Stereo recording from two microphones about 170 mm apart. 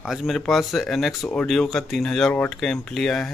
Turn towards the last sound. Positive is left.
turn(degrees=0)  # may be behind; listen again after turning